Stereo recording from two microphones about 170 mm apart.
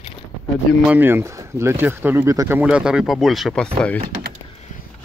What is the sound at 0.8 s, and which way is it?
Speech, 10° right (ahead or behind).